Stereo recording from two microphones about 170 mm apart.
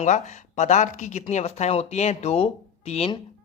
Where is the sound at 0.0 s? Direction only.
45° left (ahead or behind).